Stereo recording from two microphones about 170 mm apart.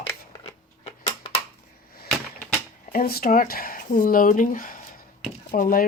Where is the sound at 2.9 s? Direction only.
60° left (ahead or behind).